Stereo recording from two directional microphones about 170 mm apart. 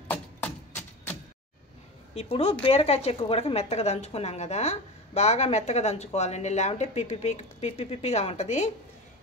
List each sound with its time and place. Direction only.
2.1 s a woman's voice: 35° left (ahead or behind)